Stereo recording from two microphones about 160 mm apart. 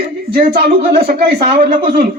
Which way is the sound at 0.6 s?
75° right (ahead or behind).